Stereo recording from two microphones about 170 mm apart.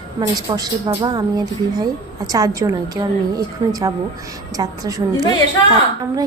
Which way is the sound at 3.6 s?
35° right (ahead or behind).